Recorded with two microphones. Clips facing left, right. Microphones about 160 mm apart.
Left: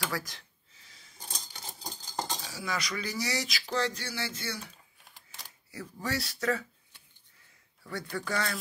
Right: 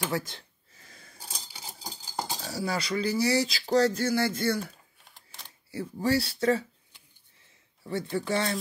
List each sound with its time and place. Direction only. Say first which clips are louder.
0.1 s speech: right 5 dB; 25° right (ahead or behind)
0.7 s a sound: right 7 dB; 55° right (ahead or behind)
1.2 s a sound: even; 10° right (ahead or behind)
2.4 s speech: right 5 dB; 35° right (ahead or behind)
5.7 s speech: right 8 dB; 30° right (ahead or behind)
7.8 s speech: right 6 dB; 25° right (ahead or behind)